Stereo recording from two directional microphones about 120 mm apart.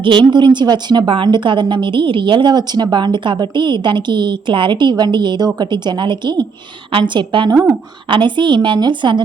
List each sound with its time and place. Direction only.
0.0 s a woman's voice: 40° right (ahead or behind)
7.5 s a woman's voice: 20° right (ahead or behind)
8.0 s a woman's voice: 45° right (ahead or behind)